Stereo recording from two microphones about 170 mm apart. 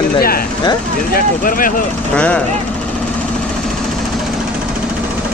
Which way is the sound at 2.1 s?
5° left (ahead or behind).